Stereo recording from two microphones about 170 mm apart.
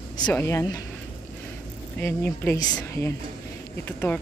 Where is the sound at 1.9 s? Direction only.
15° left (ahead or behind).